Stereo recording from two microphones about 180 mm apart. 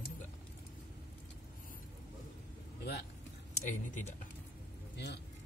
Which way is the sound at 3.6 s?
40° left (ahead or behind).